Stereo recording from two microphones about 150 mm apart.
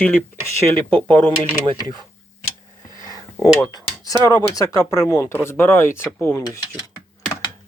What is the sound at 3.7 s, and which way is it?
Speech, 30° left (ahead or behind).